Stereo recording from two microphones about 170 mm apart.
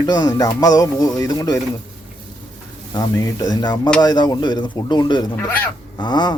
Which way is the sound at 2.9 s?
20° left (ahead or behind).